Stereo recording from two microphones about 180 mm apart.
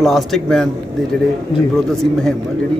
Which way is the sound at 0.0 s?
Centre (ahead or behind).